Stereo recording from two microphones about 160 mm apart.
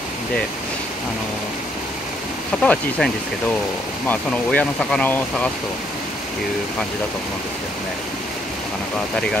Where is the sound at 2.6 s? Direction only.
5° left (ahead or behind).